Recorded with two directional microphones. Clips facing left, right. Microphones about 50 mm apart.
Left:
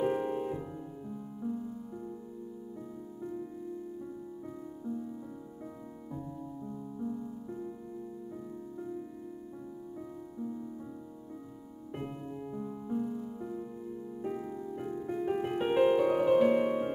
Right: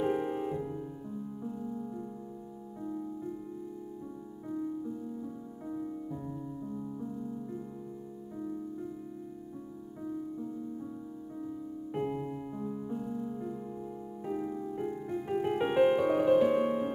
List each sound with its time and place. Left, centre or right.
0.0 s piano: centre
1.5 s music: centre
4.5 s music: centre
12.1 s music: centre
12.9 s music: centre
15.4 s music: centre